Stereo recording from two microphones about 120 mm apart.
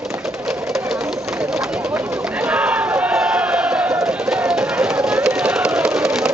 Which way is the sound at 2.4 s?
10° right (ahead or behind).